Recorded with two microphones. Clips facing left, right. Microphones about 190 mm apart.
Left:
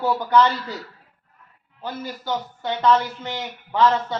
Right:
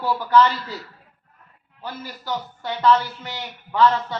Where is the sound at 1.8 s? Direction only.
20° left (ahead or behind).